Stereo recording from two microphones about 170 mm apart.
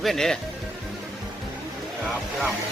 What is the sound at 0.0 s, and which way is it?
Speech, centre (ahead or behind).